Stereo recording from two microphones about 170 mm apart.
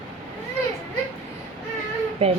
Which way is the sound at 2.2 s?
35° right (ahead or behind).